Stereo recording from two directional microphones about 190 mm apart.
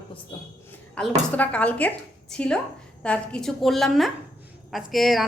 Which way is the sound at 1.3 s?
5° left (ahead or behind).